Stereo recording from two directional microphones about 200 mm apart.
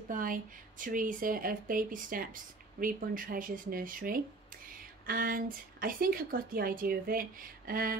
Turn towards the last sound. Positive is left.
turn(degrees=-45)  # may be behind; listen again after turning